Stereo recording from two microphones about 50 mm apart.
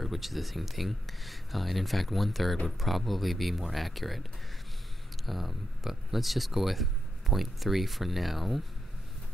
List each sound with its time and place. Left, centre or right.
0.0 s speech: centre